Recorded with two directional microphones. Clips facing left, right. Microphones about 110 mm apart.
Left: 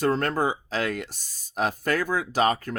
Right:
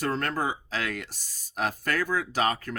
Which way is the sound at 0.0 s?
30° left (ahead or behind).